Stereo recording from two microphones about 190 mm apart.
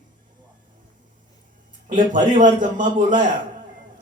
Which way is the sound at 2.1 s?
40° right (ahead or behind).